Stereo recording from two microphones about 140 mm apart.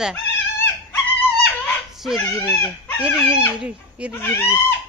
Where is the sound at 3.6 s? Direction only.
10° right (ahead or behind).